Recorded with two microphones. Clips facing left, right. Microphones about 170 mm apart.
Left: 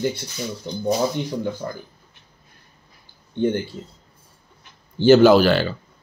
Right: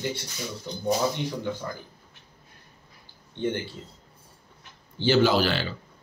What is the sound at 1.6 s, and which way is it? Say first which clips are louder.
Speech: left 5 dB; 40° left (ahead or behind).